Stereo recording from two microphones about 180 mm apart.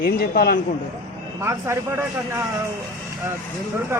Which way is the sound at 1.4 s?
15° right (ahead or behind).